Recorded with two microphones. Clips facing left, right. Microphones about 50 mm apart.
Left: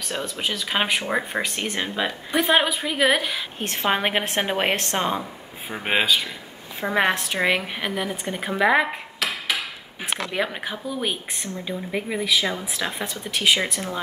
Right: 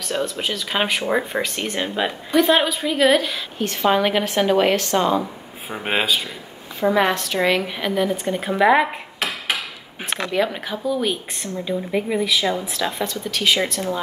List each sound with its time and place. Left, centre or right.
0.4 s a woman's voice: centre
3.5 s a woman's voice: left
4.2 s a woman's voice: left
5.7 s speech: centre
6.8 s a woman's voice: left; by 8.8 s centre
10.3 s a woman's voice: centre
11.9 s a woman's voice: centre